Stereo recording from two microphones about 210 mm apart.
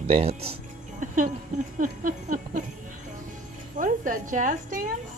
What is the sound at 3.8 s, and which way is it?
A woman's voice, 40° right (ahead or behind).